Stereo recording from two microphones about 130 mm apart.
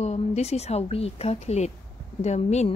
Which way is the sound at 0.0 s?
55° left (ahead or behind).